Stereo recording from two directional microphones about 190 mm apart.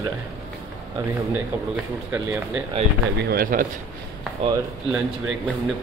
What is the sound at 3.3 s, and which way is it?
Speech, 45° right (ahead or behind).